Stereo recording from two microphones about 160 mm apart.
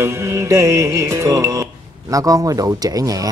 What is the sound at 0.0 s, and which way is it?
Music, 15° right (ahead or behind).